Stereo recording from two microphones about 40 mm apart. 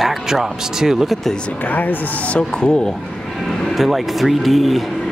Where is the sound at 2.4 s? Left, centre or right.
Left.